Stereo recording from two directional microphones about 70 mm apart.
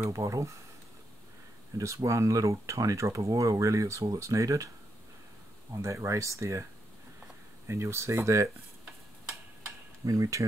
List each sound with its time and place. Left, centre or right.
0.1 s speech: right
1.7 s speech: right
5.8 s speech: right
7.6 s speech: right
10.0 s speech: right